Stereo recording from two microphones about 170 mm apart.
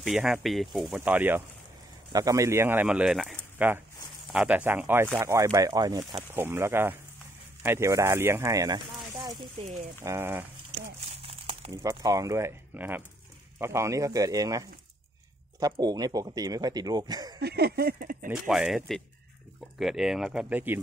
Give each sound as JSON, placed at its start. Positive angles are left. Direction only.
{"t": 0.0, "sound": "speech", "side_deg": -5}
{"t": 11.2, "sound": "crumpling", "side_deg": -35}
{"t": 11.7, "sound": "speech", "side_deg": -20}
{"t": 17.4, "sound": "speech", "side_deg": -70}
{"t": 18.3, "sound": "speech", "side_deg": 0}